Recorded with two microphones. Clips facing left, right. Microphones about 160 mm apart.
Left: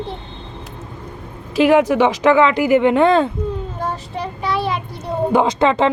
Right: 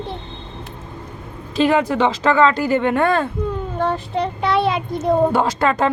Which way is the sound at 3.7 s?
65° right (ahead or behind).